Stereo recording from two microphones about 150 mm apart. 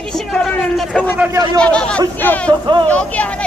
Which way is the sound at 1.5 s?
5° left (ahead or behind).